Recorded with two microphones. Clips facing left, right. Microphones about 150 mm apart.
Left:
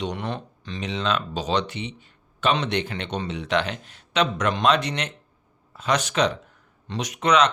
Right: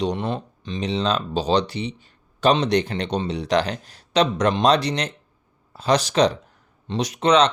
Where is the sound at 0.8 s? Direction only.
35° right (ahead or behind).